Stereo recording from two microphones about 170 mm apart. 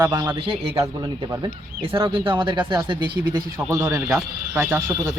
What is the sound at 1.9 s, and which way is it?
Speech, 30° right (ahead or behind).